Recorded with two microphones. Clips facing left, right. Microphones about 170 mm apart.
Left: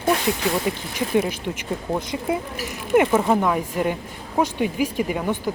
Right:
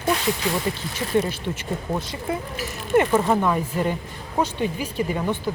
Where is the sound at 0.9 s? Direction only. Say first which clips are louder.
Left 1 dB; 15° left (ahead or behind).